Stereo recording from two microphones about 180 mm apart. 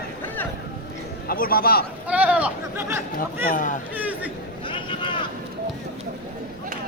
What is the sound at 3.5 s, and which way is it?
Speech, 45° left (ahead or behind).